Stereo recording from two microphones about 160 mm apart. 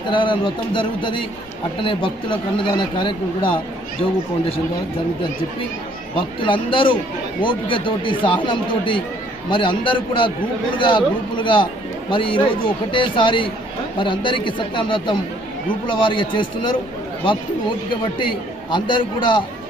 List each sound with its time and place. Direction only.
0.1 s a man's voice: 30° left (ahead or behind)
6.1 s a man's voice: 30° left (ahead or behind)
18.7 s a man's voice: 30° left (ahead or behind)